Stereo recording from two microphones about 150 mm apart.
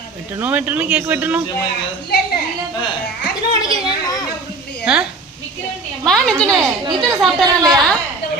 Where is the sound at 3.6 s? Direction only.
25° left (ahead or behind).